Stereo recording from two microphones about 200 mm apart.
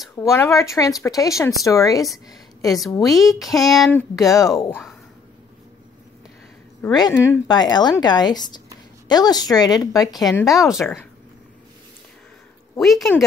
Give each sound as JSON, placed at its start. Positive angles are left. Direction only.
{"t": 0.1, "sound": "speech", "side_deg": 15}
{"t": 2.2, "sound": "a sound", "side_deg": 15}
{"t": 3.0, "sound": "speech", "side_deg": 0}
{"t": 4.6, "sound": "speech", "side_deg": 10}
{"t": 6.8, "sound": "speech", "side_deg": 20}
{"t": 10.2, "sound": "speech", "side_deg": 0}
{"t": 12.7, "sound": "speech", "side_deg": 0}